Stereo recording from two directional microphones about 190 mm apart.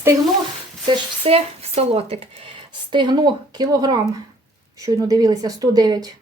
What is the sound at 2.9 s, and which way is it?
Speech, 25° right (ahead or behind).